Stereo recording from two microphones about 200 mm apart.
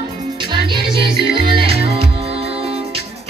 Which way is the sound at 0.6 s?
25° right (ahead or behind).